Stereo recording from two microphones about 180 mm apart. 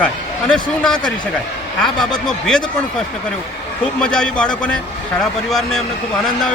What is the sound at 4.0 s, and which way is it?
Speech, 5° left (ahead or behind).